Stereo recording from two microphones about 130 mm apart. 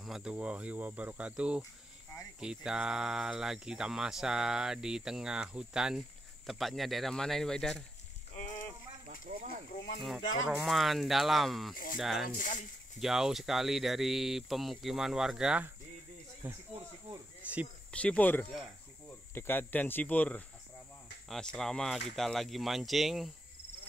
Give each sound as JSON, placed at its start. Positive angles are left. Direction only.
{"t": 0.0, "sound": "speech", "side_deg": -5}
{"t": 9.0, "sound": "snake", "side_deg": -65}
{"t": 10.5, "sound": "speech", "side_deg": 0}
{"t": 11.7, "sound": "speech", "side_deg": 90}
{"t": 12.0, "sound": "speech", "side_deg": 0}
{"t": 12.4, "sound": "speech", "side_deg": 90}
{"t": 13.0, "sound": "speech", "side_deg": -5}
{"t": 17.4, "sound": "cricket", "side_deg": -10}
{"t": 17.9, "sound": "speech", "side_deg": 10}
{"t": 18.5, "sound": "cricket", "side_deg": 0}
{"t": 19.3, "sound": "speech", "side_deg": 15}